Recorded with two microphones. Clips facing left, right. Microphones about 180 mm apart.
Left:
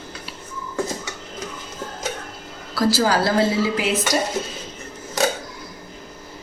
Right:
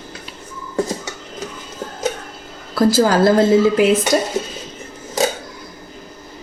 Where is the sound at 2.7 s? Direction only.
50° right (ahead or behind).